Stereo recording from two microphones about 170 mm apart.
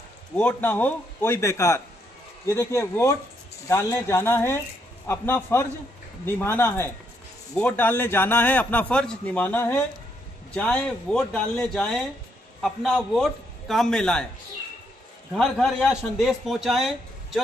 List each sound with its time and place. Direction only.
0.4 s a man's voice: 10° left (ahead or behind)
15.3 s a man's voice: centre (ahead or behind)